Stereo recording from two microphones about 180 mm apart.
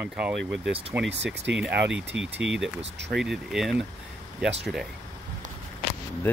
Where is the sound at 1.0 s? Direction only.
75° right (ahead or behind).